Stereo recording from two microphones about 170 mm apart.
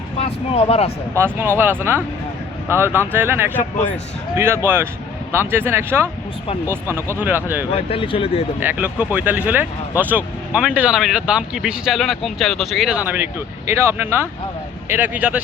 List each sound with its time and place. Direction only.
0.2 s speech: 35° left (ahead or behind)
1.1 s speech: 15° right (ahead or behind)
7.7 s speech: 35° left (ahead or behind)
8.6 s speech: 10° right (ahead or behind)